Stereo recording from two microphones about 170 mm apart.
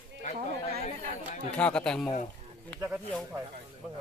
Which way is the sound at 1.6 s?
5° left (ahead or behind).